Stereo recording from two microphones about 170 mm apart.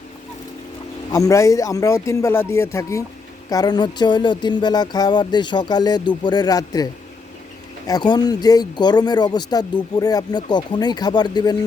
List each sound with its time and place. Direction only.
1.1 s speech: 20° left (ahead or behind)
7.9 s speech: 25° left (ahead or behind)